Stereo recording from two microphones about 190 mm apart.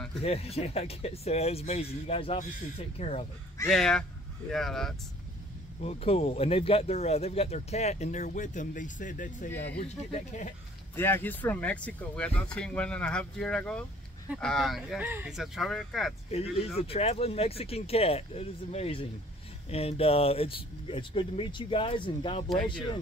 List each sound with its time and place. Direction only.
0.2 s speech: 30° left (ahead or behind)
3.6 s speech: centre (ahead or behind)
5.8 s speech: 35° left (ahead or behind)
11.0 s speech: 10° left (ahead or behind)
16.3 s speech: 30° left (ahead or behind)